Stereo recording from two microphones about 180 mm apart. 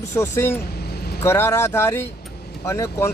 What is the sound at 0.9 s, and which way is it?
Vehicle, 60° left (ahead or behind).